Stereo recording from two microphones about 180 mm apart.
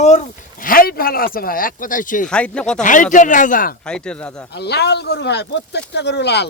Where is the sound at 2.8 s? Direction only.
45° left (ahead or behind).